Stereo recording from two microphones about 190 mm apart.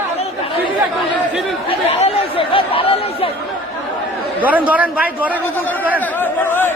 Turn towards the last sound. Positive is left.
turn(degrees=10)  # may be behind; listen again after turning